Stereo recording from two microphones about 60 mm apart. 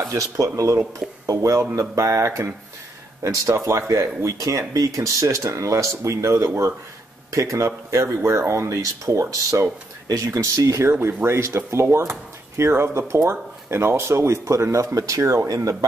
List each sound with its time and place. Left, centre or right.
0.1 s speech: right